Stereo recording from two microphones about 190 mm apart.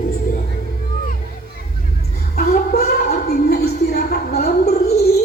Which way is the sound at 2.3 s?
50° left (ahead or behind).